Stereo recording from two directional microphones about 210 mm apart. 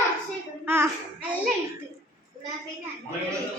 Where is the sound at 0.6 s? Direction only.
10° right (ahead or behind).